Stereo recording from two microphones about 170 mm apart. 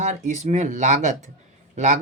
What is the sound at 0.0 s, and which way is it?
Speech, 45° right (ahead or behind).